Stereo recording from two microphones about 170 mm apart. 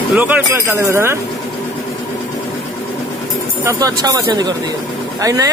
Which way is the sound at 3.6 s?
20° right (ahead or behind).